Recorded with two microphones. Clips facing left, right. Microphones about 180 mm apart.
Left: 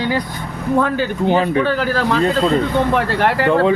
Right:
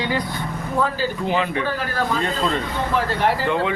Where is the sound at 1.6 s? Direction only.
80° left.